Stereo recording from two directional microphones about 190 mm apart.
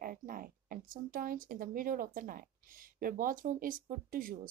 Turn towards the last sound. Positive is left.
turn(degrees=-45)  # may be behind; listen again after turning